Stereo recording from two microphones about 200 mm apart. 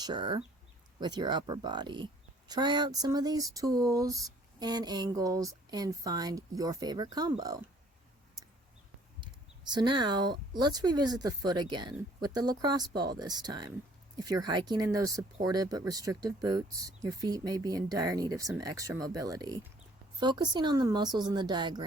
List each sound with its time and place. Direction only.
0.0 s speech: 25° right (ahead or behind)
9.2 s speech: 20° right (ahead or behind)